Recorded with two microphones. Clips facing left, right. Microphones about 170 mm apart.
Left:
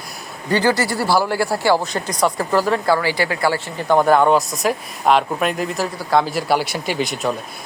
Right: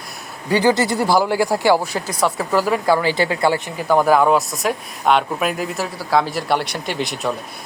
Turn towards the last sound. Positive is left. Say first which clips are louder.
# left 2 dB
turn(degrees=0)  # may be behind; listen again after turning